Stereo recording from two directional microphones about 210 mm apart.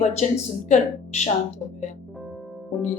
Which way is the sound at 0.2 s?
30° left (ahead or behind).